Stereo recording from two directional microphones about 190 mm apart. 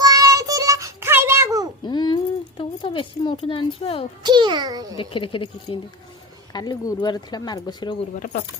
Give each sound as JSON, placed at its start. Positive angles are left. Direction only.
{"t": 0.0, "sound": "child singing", "side_deg": -20}
{"t": 1.8, "sound": "a sound", "side_deg": 25}
{"t": 4.2, "sound": "a child's voice", "side_deg": -25}
{"t": 4.9, "sound": "speech", "side_deg": 25}